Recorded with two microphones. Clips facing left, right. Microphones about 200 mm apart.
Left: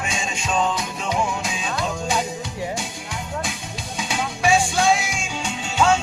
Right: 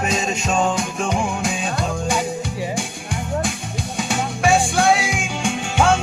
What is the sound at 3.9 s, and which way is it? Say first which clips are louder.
Music: right 3 dB; 50° right (ahead or behind).